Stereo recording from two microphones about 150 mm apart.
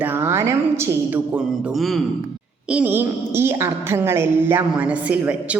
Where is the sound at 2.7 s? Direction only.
10° right (ahead or behind).